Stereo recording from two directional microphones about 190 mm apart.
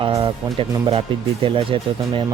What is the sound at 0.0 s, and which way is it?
Speech, 25° right (ahead or behind).